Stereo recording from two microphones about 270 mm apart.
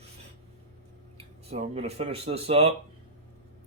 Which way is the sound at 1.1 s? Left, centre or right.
Right.